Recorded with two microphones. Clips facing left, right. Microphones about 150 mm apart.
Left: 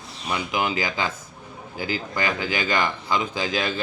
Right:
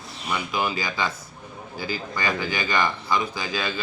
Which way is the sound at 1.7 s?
15° left (ahead or behind).